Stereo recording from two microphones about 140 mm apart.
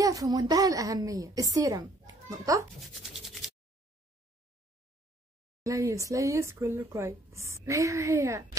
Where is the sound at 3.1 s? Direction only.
Centre (ahead or behind).